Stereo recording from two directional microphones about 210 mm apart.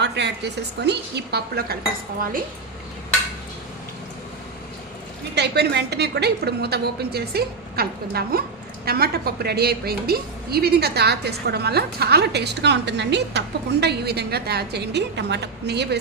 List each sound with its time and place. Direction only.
0.0 s a sound: 55° right (ahead or behind)
0.8 s a woman's voice: 55° right (ahead or behind)
5.3 s a woman's voice: 50° right (ahead or behind)